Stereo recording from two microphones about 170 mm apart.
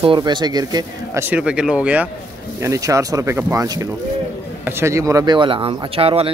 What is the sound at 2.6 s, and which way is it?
Speech, 20° right (ahead or behind).